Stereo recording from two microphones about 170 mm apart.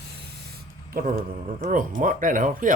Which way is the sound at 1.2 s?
45° right (ahead or behind).